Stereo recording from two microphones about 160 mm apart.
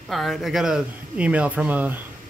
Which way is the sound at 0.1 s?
Centre (ahead or behind).